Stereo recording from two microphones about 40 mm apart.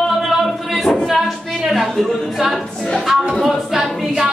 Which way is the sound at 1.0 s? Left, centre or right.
Centre.